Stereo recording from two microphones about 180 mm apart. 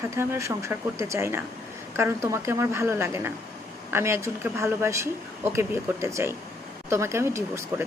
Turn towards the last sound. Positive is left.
turn(degrees=-15)  # may be behind; listen again after turning